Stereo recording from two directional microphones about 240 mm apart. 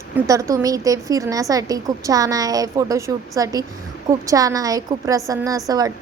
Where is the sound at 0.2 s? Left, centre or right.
Centre.